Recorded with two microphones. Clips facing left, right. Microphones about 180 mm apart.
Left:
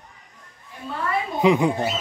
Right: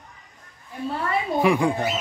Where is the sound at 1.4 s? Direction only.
20° left (ahead or behind).